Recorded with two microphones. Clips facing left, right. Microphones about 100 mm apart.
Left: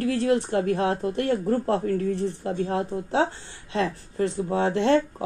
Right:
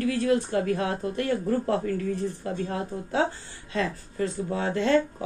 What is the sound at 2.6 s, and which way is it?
Speech, 60° left (ahead or behind).